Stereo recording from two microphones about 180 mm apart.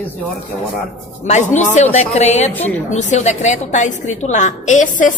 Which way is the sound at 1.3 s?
40° left (ahead or behind).